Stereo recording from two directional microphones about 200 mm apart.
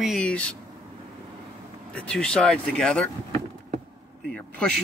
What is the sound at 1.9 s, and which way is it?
Speech, 5° left (ahead or behind).